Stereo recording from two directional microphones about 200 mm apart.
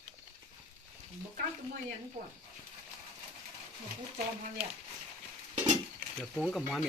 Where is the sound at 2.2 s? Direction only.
40° right (ahead or behind).